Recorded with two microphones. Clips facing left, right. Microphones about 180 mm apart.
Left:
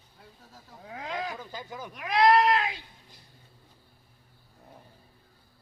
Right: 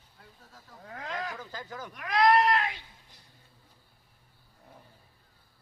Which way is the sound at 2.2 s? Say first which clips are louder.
Left 2 dB; 30° left (ahead or behind).